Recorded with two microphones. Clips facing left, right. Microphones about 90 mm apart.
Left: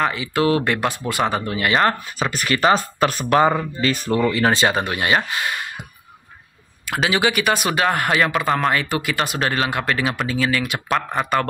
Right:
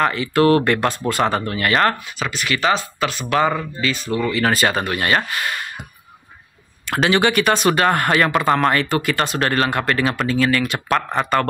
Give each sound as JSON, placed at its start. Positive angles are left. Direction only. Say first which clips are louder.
{"t": 0.0, "sound": "speech", "louder": "right 3 dB", "side_deg": 10}
{"t": 1.9, "sound": "speech", "louder": "left 1 dB", "side_deg": 35}
{"t": 3.8, "sound": "speech", "louder": "left 2 dB", "side_deg": 50}
{"t": 4.3, "sound": "speech", "louder": "right 2 dB", "side_deg": 30}
{"t": 6.9, "sound": "speech", "louder": "right 3 dB", "side_deg": 5}